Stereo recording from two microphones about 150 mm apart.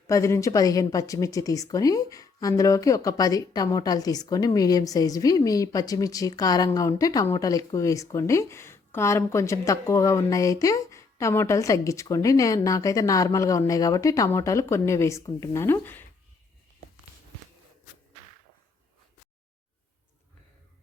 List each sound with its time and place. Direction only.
0.1 s speech: 20° left (ahead or behind)